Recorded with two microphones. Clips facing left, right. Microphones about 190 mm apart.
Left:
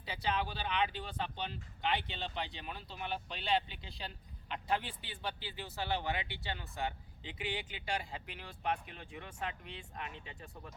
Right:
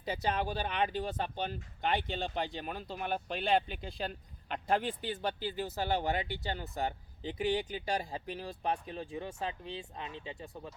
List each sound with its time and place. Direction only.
0.0 s speech: 45° right (ahead or behind); by 10.3 s 25° right (ahead or behind)